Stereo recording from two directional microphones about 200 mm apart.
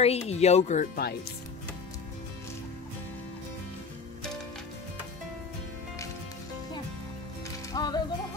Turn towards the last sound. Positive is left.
turn(degrees=20)  # may be behind; listen again after turning